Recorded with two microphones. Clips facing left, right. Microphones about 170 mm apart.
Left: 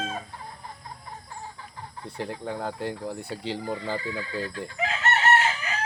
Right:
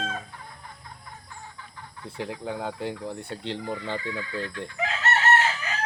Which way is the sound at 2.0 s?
Centre (ahead or behind).